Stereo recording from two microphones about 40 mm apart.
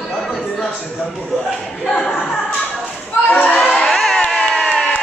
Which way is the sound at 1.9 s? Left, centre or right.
Left.